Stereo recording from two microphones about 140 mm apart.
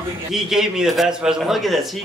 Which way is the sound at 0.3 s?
5° right (ahead or behind).